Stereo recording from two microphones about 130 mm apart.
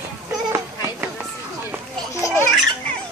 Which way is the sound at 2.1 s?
20° left (ahead or behind).